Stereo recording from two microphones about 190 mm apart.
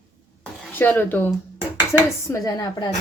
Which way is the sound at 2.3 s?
20° left (ahead or behind).